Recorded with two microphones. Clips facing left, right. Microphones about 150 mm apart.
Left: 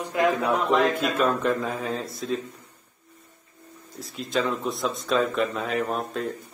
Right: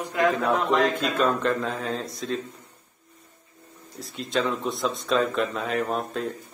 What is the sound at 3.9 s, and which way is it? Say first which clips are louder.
Speech: even; centre (ahead or behind).